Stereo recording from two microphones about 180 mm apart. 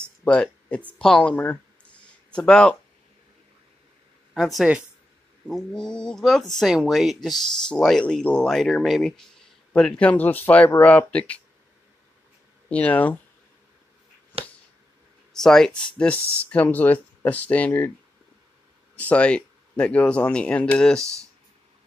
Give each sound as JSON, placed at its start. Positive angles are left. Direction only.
{"t": 0.2, "sound": "speech", "side_deg": 5}
{"t": 4.3, "sound": "speech", "side_deg": 0}
{"t": 12.6, "sound": "speech", "side_deg": 5}
{"t": 14.3, "sound": "a sound", "side_deg": -30}
{"t": 15.3, "sound": "speech", "side_deg": 5}
{"t": 16.2, "sound": "speech", "side_deg": -15}
{"t": 16.5, "sound": "speech", "side_deg": 10}
{"t": 18.9, "sound": "speech", "side_deg": 5}
{"t": 21.0, "sound": "speech", "side_deg": -15}